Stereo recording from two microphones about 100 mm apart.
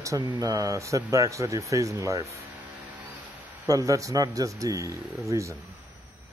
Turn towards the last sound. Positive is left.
turn(degrees=-35)  # may be behind; listen again after turning